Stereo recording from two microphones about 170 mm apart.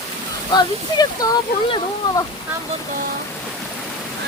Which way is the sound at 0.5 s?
25° left (ahead or behind).